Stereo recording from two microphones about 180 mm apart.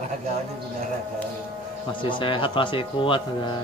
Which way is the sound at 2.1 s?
30° left (ahead or behind).